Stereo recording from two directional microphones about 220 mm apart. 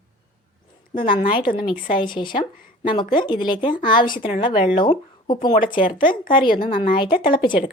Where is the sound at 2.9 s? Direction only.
20° left (ahead or behind).